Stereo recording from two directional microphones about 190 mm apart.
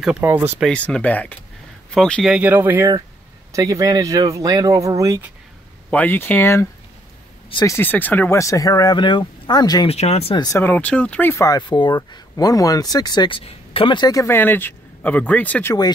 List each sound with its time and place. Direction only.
0.0 s speech: 5° right (ahead or behind)
0.7 s speech: 5° left (ahead or behind)
2.3 s speech: 10° right (ahead or behind)
5.9 s speech: 10° left (ahead or behind)
7.4 s speech: 25° left (ahead or behind)
7.7 s speech: 10° left (ahead or behind)
9.8 s speech: 35° left (ahead or behind)
10.4 s speech: 15° left (ahead or behind)